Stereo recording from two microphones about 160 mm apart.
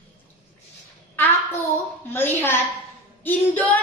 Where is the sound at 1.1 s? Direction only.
10° left (ahead or behind).